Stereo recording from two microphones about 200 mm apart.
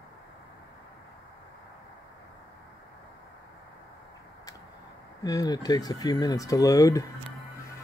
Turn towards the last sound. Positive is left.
turn(degrees=15)  # may be behind; listen again after turning